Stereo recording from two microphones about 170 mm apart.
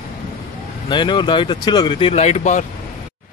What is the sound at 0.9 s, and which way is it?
Speech, 30° left (ahead or behind).